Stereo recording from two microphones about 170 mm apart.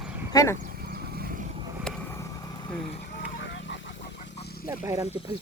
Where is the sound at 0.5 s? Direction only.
65° right (ahead or behind).